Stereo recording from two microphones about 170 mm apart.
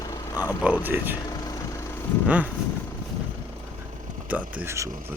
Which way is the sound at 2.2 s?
10° right (ahead or behind).